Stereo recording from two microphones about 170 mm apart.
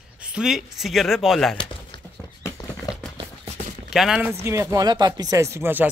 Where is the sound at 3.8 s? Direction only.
5° right (ahead or behind).